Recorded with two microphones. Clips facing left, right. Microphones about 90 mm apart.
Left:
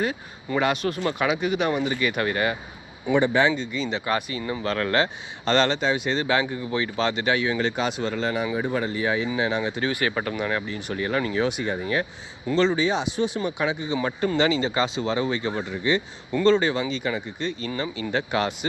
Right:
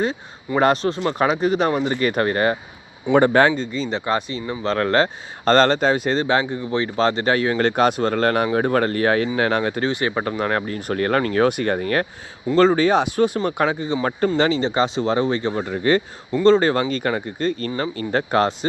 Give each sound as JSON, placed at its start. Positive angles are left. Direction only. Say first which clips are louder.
{"t": 0.0, "sound": "speech", "louder": "right 4 dB", "side_deg": -30}
{"t": 3.1, "sound": "speech", "louder": "right 5 dB", "side_deg": -55}
{"t": 3.5, "sound": "speech", "louder": "right 3 dB", "side_deg": -35}
{"t": 9.8, "sound": "speech", "louder": "right 3 dB", "side_deg": -25}
{"t": 12.5, "sound": "speech", "louder": "right 6 dB", "side_deg": -45}
{"t": 15.6, "sound": "speech", "louder": "right 7 dB", "side_deg": -55}
{"t": 16.3, "sound": "speech", "louder": "right 5 dB", "side_deg": -35}